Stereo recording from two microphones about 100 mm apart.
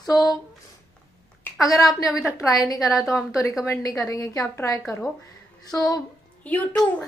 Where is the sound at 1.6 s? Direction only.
35° left (ahead or behind).